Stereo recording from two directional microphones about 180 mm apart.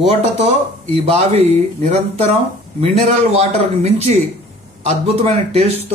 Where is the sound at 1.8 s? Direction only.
35° right (ahead or behind).